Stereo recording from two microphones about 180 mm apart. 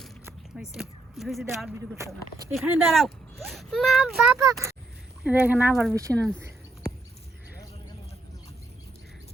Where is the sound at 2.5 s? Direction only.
Centre (ahead or behind).